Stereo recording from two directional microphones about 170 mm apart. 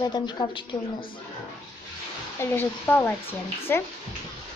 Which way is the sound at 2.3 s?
10° left (ahead or behind).